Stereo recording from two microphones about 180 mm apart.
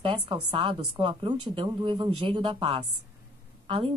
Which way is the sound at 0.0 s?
30° right (ahead or behind).